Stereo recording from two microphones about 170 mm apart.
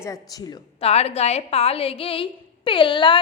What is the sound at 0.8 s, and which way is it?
A woman's voice, 35° left (ahead or behind).